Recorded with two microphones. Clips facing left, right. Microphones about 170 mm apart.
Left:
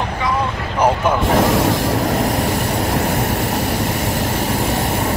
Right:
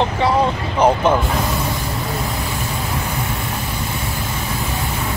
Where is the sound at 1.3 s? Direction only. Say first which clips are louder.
Left 7 dB; 90° left.